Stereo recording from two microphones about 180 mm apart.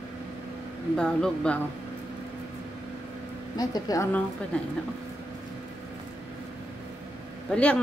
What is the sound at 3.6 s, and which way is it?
Speech, 20° left (ahead or behind).